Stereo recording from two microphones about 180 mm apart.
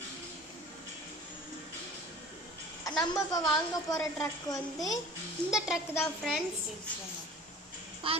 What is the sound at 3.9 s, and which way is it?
Speech, 15° left (ahead or behind).